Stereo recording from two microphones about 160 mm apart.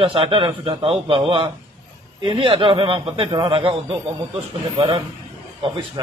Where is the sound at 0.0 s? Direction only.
35° right (ahead or behind).